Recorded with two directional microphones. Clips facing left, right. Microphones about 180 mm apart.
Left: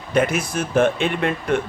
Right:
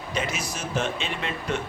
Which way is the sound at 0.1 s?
55° left (ahead or behind).